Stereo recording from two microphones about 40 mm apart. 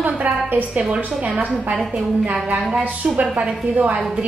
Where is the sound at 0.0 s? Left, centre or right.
Right.